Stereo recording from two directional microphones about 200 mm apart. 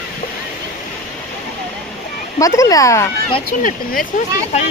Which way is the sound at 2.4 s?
15° left (ahead or behind).